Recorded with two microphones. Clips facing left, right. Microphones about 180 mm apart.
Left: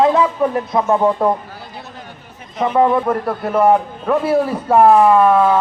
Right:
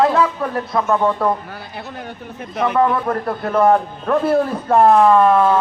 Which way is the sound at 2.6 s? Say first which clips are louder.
Left 2 dB; 20° left (ahead or behind).